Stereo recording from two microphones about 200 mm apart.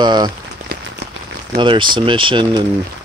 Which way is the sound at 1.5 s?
25° right (ahead or behind).